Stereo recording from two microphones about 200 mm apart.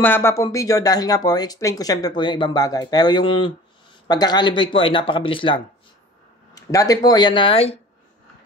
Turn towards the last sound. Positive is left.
turn(degrees=30)  # may be behind; listen again after turning